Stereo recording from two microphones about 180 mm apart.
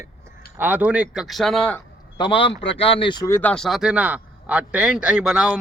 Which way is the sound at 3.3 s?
10° left (ahead or behind).